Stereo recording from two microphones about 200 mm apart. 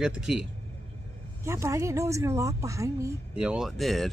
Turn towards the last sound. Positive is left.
turn(degrees=0)  # may be behind; listen again after turning